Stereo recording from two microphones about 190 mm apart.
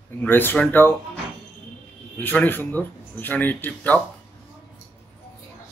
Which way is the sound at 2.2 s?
10° left (ahead or behind).